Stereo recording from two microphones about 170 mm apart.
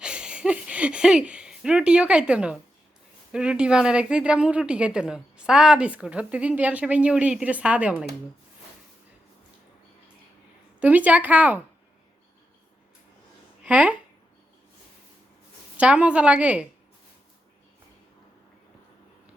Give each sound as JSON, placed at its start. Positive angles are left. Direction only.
{"t": 0.0, "sound": "a woman's voice", "side_deg": -5}
{"t": 10.8, "sound": "a woman's voice", "side_deg": -10}
{"t": 13.7, "sound": "a woman's voice", "side_deg": -5}
{"t": 15.8, "sound": "a woman's voice", "side_deg": -5}